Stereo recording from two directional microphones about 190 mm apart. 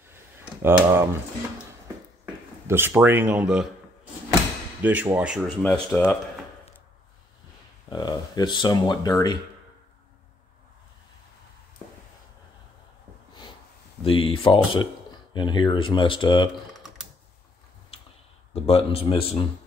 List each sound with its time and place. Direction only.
0.1 s a sound: 10° right (ahead or behind)
2.6 s speech: 10° right (ahead or behind)
4.8 s speech: 10° right (ahead or behind)
5.6 s speech: 5° left (ahead or behind)
7.9 s speech: 20° left (ahead or behind)
14.0 s speech: 30° left (ahead or behind)
18.5 s speech: 30° left (ahead or behind)